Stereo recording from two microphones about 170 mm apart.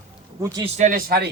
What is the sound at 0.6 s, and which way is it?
Speech, 45° right (ahead or behind).